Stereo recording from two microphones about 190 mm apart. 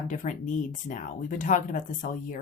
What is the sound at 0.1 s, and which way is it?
Speech, 45° left (ahead or behind).